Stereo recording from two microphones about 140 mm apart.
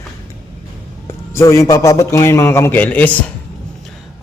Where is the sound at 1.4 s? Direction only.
20° left (ahead or behind).